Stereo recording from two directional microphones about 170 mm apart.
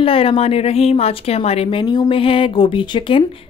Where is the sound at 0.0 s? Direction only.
35° left (ahead or behind).